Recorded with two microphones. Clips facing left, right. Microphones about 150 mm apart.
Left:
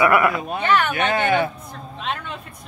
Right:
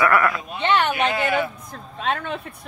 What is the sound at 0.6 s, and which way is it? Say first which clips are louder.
Speech: even; 25° right (ahead or behind).